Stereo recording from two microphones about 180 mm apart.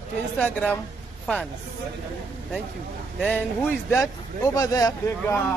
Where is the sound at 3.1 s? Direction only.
10° left (ahead or behind).